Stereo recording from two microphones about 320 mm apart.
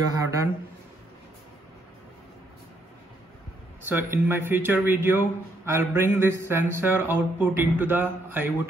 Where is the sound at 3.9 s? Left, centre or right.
Centre.